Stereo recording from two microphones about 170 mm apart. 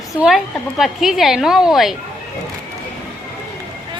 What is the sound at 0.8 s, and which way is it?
A woman's voice, centre (ahead or behind).